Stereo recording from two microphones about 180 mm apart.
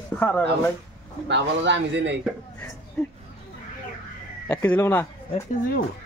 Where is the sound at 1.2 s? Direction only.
80° right.